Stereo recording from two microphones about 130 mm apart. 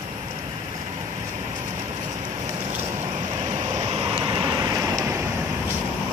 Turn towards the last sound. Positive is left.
turn(degrees=-25)  # may be behind; listen again after turning